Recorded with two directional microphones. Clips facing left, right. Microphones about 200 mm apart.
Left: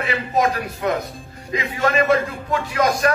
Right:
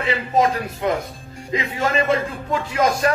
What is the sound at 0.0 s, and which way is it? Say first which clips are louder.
A man's voice: right 1 dB; 25° right (ahead or behind).